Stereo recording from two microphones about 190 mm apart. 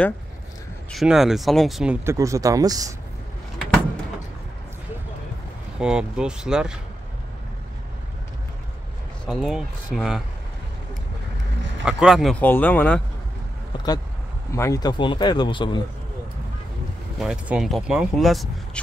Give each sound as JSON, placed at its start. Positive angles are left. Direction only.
{"t": 0.9, "sound": "speech", "side_deg": 0}
{"t": 2.0, "sound": "speech", "side_deg": -15}
{"t": 5.8, "sound": "speech", "side_deg": -5}
{"t": 9.2, "sound": "speech", "side_deg": 0}
{"t": 11.8, "sound": "speech", "side_deg": -5}
{"t": 14.5, "sound": "speech", "side_deg": 15}
{"t": 17.2, "sound": "speech", "side_deg": -5}